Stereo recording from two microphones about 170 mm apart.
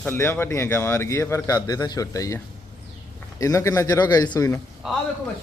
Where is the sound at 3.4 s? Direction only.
20° left (ahead or behind).